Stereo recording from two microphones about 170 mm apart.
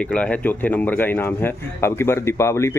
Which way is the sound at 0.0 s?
5° left (ahead or behind).